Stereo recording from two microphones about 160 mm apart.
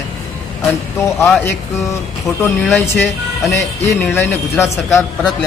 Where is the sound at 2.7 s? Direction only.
10° left (ahead or behind).